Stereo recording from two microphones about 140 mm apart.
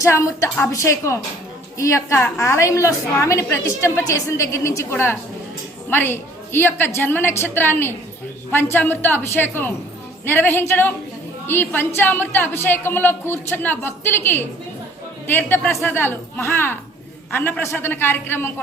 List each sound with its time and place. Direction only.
0.0 s a woman's voice: 20° left (ahead or behind)